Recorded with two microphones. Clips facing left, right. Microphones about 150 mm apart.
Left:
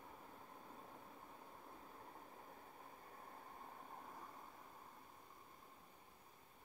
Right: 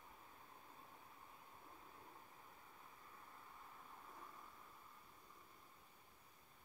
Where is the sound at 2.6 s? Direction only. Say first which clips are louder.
Left 5 dB; 50° left (ahead or behind).